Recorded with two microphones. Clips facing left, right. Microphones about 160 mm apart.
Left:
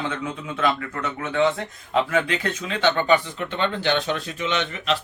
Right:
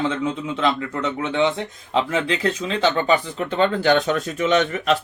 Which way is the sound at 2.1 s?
30° right (ahead or behind).